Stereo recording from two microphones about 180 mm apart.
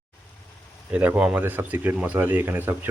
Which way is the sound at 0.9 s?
5° right (ahead or behind).